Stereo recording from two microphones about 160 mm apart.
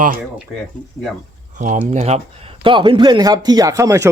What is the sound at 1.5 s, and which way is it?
Speech, 55° right (ahead or behind).